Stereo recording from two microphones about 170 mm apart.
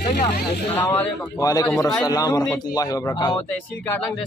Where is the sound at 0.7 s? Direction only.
10° left (ahead or behind).